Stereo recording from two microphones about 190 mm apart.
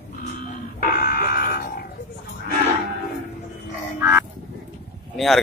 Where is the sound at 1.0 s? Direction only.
50° left (ahead or behind).